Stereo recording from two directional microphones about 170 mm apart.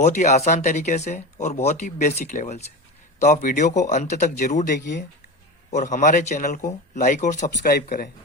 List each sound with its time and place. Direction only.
0.0 s speech: 45° left (ahead or behind)
4.8 s speech: 90° left
5.7 s speech: 45° left (ahead or behind)